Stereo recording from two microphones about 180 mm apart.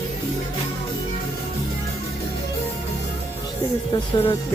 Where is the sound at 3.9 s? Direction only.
25° left (ahead or behind).